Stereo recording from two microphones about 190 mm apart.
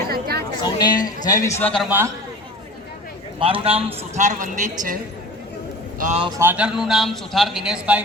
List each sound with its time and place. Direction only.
0.1 s a sound: 55° right (ahead or behind)
0.6 s a man's voice: 20° left (ahead or behind)
3.4 s a man's voice: 30° right (ahead or behind)
6.0 s speech: 40° right (ahead or behind)
6.4 s a man's voice: 10° right (ahead or behind)